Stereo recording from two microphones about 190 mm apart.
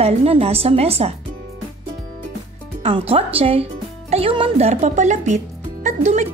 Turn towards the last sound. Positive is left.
turn(degrees=-40)  # may be behind; listen again after turning